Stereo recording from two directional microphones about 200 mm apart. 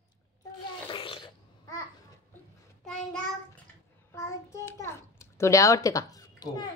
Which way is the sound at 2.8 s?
5° left (ahead or behind).